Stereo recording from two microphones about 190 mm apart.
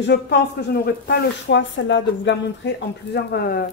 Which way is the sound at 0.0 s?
65° left (ahead or behind).